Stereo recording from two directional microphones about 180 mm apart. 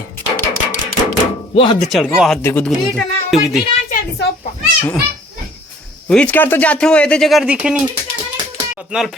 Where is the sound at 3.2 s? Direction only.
Centre (ahead or behind).